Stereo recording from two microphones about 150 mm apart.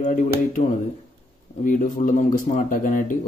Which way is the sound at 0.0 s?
55° left (ahead or behind).